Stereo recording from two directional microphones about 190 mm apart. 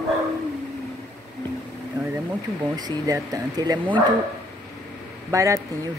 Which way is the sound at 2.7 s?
20° right (ahead or behind).